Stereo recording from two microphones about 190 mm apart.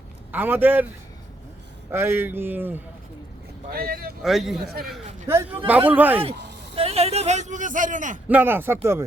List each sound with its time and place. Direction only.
0.3 s a man's voice: 10° right (ahead or behind)
1.9 s a man's voice: 10° right (ahead or behind)
3.7 s speech: 50° right (ahead or behind)
4.2 s a man's voice: centre (ahead or behind)
4.6 s speech: 55° right (ahead or behind)
5.6 s a man's voice: 10° right (ahead or behind)
6.3 s a sound: 65° right (ahead or behind)
6.7 s speech: 30° right (ahead or behind)
8.3 s a man's voice: 10° right (ahead or behind)